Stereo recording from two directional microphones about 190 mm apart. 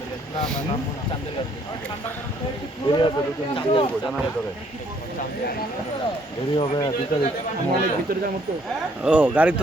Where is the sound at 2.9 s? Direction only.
25° left (ahead or behind).